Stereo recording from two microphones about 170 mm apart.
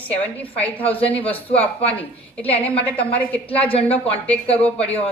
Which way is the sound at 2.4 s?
10° left (ahead or behind).